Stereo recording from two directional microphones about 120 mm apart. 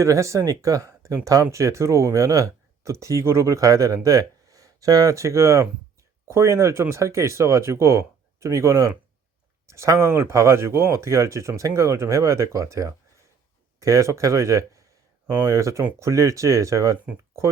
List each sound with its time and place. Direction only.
0.0 s speech: 25° right (ahead or behind)